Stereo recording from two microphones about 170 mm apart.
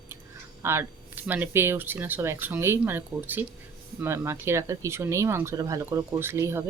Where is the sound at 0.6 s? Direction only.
15° right (ahead or behind).